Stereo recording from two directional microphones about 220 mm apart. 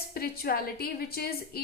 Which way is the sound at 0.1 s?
45° left (ahead or behind).